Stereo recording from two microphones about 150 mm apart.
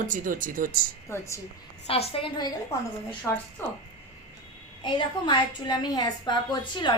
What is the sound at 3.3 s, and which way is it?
Speech, 10° left (ahead or behind).